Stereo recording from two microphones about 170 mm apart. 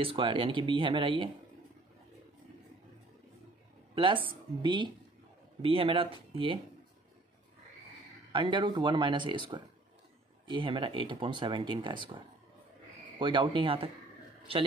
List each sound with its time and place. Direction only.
0.0 s speech: 30° right (ahead or behind)
3.9 s speech: 30° right (ahead or behind)
8.3 s speech: 30° right (ahead or behind)
13.2 s speech: 30° right (ahead or behind)